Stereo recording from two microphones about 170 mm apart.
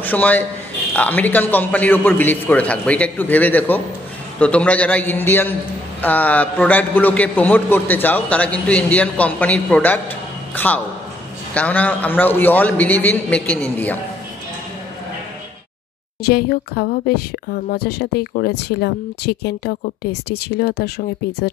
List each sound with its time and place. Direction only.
0.0 s a man's voice: 10° left (ahead or behind)
16.3 s speech: 65° left (ahead or behind)